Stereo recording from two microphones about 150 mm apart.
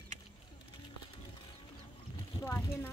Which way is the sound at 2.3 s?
20° left (ahead or behind).